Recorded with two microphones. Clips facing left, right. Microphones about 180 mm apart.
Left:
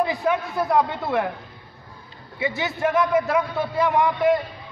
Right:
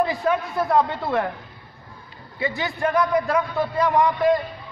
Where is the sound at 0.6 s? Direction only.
Centre (ahead or behind).